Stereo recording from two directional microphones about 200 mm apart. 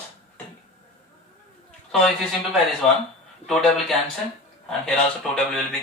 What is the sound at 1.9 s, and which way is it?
Speech, centre (ahead or behind).